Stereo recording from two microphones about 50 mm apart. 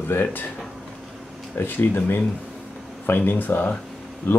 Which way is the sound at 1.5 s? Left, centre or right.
Left.